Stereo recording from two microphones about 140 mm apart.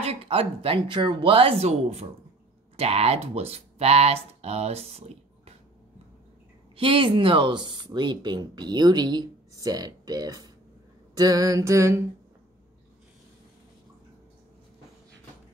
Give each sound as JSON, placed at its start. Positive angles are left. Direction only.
{"t": 0.0, "sound": "speech", "side_deg": -45}
{"t": 6.8, "sound": "speech", "side_deg": -40}
{"t": 11.1, "sound": "a sound", "side_deg": -25}